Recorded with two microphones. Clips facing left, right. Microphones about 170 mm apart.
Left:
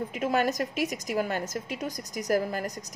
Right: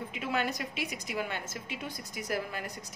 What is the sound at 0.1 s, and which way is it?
A woman's voice, 40° left (ahead or behind).